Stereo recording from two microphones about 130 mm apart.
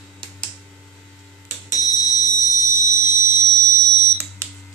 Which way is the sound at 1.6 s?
25° right (ahead or behind).